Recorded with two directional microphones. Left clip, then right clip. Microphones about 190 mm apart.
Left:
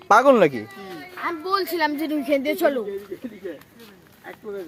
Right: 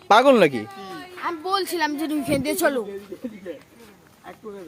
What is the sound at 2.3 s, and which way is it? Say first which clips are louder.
Speech: left 2 dB; 20° right (ahead or behind).